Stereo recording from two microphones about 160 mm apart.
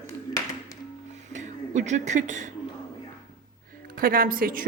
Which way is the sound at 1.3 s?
50° right (ahead or behind).